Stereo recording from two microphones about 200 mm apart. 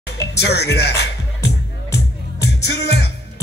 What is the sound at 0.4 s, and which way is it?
Speech, 55° left (ahead or behind).